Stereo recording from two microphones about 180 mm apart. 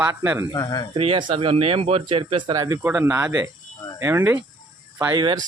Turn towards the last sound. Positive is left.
turn(degrees=-25)  # may be behind; listen again after turning